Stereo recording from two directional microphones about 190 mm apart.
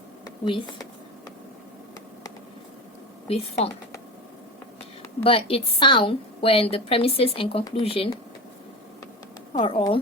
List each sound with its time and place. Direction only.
0.3 s speech: 25° left (ahead or behind)
3.2 s speech: 35° left (ahead or behind)
5.2 s a woman's voice: 30° left (ahead or behind)
9.6 s a woman's voice: 25° left (ahead or behind)